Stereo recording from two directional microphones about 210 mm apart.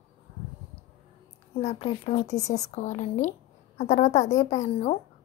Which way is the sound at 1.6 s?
30° left (ahead or behind).